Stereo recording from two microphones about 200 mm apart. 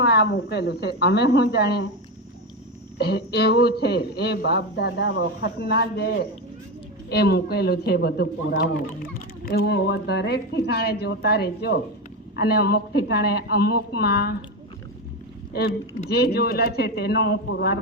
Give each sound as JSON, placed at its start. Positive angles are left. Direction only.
{"t": 0.0, "sound": "speech", "side_deg": 55}
{"t": 3.0, "sound": "speech", "side_deg": 55}
{"t": 7.1, "sound": "speech", "side_deg": 55}
{"t": 16.0, "sound": "speech", "side_deg": 55}